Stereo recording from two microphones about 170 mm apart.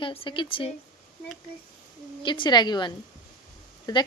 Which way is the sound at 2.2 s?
30° left (ahead or behind).